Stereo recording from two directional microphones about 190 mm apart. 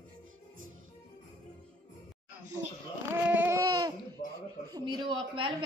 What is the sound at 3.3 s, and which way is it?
Babbling, 10° right (ahead or behind).